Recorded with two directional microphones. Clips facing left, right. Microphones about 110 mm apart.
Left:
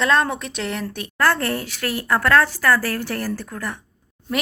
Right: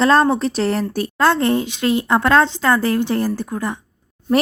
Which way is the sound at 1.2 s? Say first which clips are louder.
Right 4 dB; 20° right (ahead or behind).